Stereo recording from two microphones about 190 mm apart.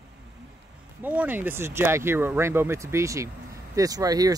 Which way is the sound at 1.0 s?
10° right (ahead or behind).